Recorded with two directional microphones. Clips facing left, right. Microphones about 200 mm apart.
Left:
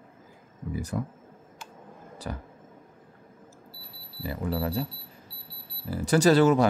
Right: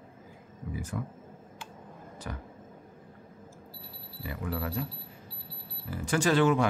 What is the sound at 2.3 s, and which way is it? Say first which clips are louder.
Speech: left 4 dB; 35° left (ahead or behind).